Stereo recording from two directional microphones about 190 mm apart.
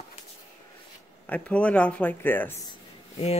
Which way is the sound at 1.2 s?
5° left (ahead or behind).